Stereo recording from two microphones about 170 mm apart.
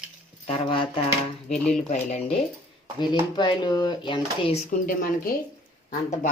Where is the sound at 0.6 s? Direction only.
30° left (ahead or behind).